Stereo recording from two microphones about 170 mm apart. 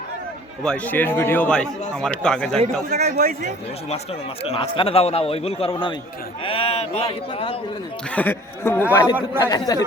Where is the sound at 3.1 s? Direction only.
60° right (ahead or behind).